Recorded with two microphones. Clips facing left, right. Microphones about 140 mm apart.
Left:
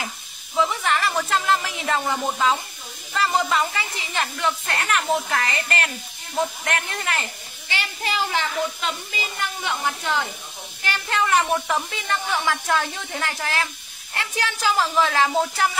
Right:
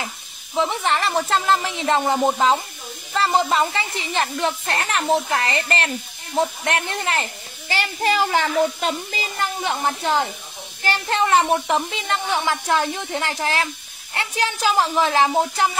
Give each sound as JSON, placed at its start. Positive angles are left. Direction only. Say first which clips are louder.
{"t": 0.6, "sound": "a child's voice", "louder": "right 1 dB", "side_deg": -30}